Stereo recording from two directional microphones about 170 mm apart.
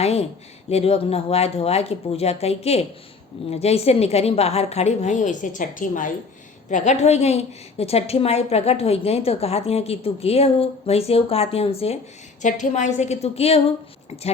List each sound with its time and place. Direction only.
0.0 s a woman's voice: 35° left (ahead or behind)
12.4 s a woman's voice: 45° left (ahead or behind)